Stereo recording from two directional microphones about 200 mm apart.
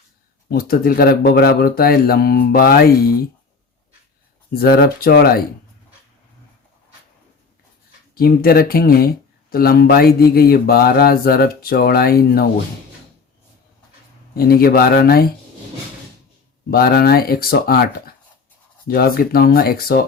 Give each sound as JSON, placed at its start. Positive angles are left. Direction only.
{"t": 0.5, "sound": "mantra", "side_deg": 50}
{"t": 4.5, "sound": "mantra", "side_deg": 50}
{"t": 8.1, "sound": "mantra", "side_deg": 50}
{"t": 14.3, "sound": "mantra", "side_deg": 50}
{"t": 16.7, "sound": "mantra", "side_deg": 50}